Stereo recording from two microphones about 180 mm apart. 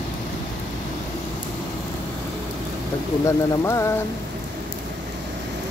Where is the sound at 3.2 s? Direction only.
15° left (ahead or behind).